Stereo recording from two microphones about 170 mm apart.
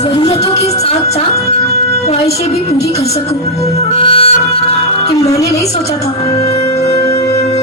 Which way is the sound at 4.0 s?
30° left (ahead or behind).